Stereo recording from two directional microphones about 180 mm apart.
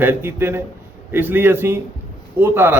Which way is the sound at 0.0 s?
10° right (ahead or behind).